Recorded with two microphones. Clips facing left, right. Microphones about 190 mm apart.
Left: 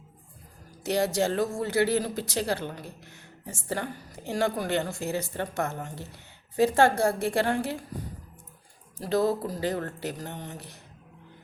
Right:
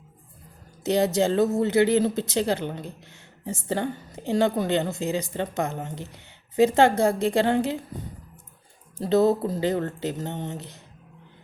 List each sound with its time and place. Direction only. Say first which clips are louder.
0.9 s speech: right 4 dB; 20° right (ahead or behind)
9.0 s speech: right 5 dB; 25° right (ahead or behind)